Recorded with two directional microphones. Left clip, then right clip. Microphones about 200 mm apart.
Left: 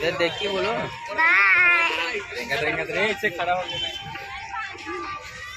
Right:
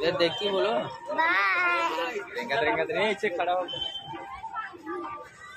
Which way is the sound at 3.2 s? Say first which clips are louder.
Left 3 dB; 45° left (ahead or behind).